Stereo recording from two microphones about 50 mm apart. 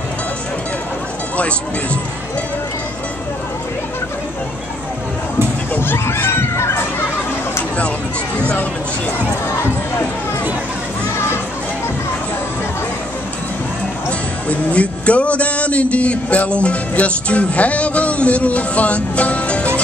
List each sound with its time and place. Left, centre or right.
5.8 s crowd: left
14.5 s a man's voice: left